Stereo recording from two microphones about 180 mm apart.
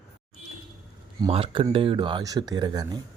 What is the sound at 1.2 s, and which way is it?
Speech, 30° right (ahead or behind).